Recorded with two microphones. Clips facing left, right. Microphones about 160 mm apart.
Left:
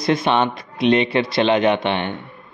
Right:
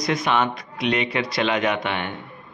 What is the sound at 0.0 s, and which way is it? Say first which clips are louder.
Speech: left 4 dB; 30° left (ahead or behind).